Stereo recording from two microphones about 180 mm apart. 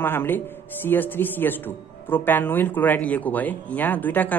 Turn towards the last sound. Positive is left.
turn(degrees=10)  # may be behind; listen again after turning